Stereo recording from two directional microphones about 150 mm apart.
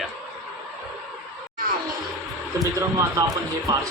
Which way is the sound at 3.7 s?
25° right (ahead or behind).